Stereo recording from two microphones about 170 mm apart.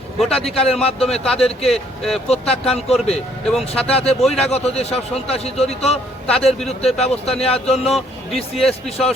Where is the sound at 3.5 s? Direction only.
5° left (ahead or behind).